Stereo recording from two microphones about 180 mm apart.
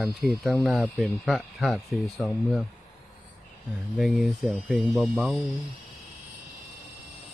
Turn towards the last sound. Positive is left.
turn(degrees=0)  # may be behind; listen again after turning